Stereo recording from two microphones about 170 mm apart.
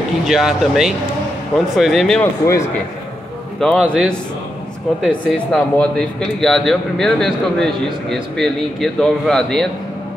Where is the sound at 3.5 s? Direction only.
5° left (ahead or behind).